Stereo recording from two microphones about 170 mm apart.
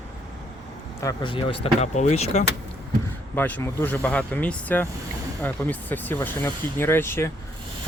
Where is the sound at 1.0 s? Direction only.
20° left (ahead or behind).